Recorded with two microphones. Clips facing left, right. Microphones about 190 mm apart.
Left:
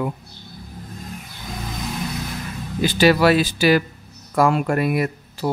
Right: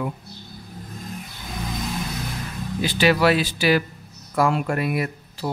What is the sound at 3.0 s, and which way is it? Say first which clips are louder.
Speech: left 3 dB; 40° left (ahead or behind).